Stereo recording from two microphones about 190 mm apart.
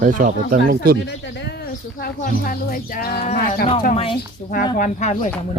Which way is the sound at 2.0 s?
50° left (ahead or behind).